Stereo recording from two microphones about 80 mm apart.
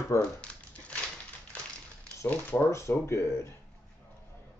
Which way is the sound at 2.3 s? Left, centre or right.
Left.